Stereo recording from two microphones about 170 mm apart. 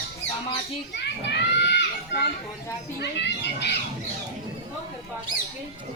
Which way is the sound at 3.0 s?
90° left.